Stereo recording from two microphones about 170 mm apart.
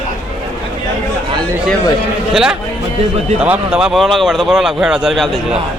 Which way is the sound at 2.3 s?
5° right (ahead or behind).